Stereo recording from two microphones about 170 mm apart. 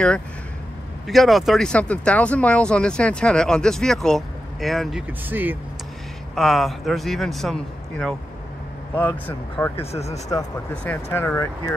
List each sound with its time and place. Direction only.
1.0 s speech: centre (ahead or behind)
5.3 s speech: 10° right (ahead or behind)
6.3 s speech: centre (ahead or behind)
9.8 s speech: 40° left (ahead or behind)
10.7 s speech: 10° left (ahead or behind)